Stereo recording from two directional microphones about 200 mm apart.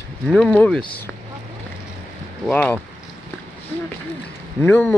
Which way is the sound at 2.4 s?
5° left (ahead or behind).